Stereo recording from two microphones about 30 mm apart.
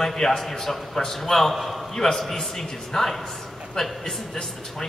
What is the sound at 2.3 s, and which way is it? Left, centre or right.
A man's voice, centre.